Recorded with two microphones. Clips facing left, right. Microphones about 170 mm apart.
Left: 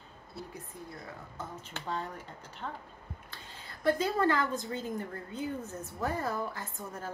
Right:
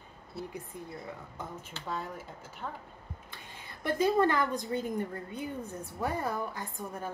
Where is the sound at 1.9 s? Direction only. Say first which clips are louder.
Even; 5° right (ahead or behind).